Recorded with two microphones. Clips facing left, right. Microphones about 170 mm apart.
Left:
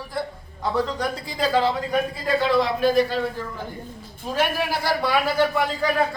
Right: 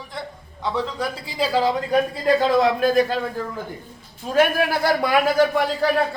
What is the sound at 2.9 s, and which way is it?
Speech, 45° right (ahead or behind).